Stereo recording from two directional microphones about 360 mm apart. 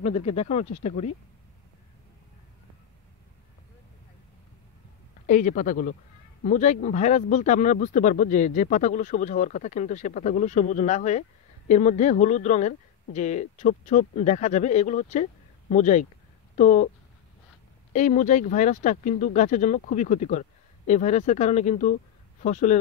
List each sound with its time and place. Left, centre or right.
0.0 s speech: centre
5.2 s speech: left
17.9 s speech: centre